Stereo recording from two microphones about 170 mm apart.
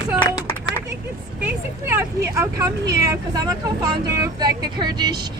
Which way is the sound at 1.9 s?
15° right (ahead or behind).